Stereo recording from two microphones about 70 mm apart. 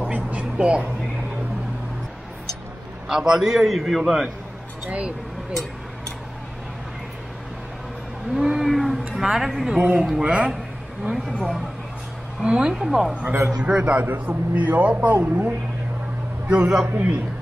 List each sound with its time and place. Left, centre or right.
0.0 s a sound: right
3.1 s a man's voice: centre
4.8 s speech: centre
8.4 s a man's voice: centre
12.4 s speech: centre
13.1 s a man's voice: right
13.6 s speech: centre
14.0 s a man's voice: right